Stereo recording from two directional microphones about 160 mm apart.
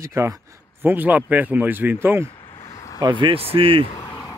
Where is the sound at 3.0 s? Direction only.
30° right (ahead or behind).